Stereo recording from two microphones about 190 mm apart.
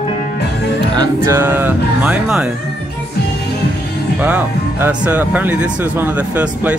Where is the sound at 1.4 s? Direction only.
10° right (ahead or behind).